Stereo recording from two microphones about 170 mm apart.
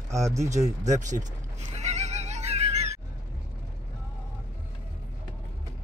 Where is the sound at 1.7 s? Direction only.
40° right (ahead or behind).